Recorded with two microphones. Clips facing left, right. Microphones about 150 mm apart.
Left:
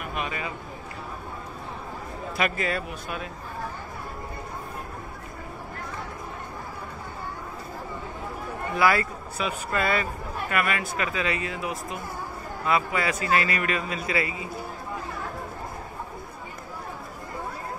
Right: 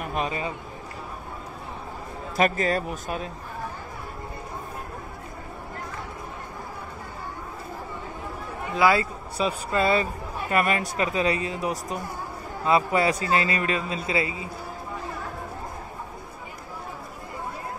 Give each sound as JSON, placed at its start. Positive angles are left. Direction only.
{"t": 0.0, "sound": "a sound", "side_deg": -35}
{"t": 2.3, "sound": "speech", "side_deg": -40}
{"t": 8.7, "sound": "a man's voice", "side_deg": -20}